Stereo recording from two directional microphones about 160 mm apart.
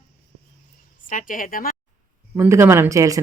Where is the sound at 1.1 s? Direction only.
55° left (ahead or behind).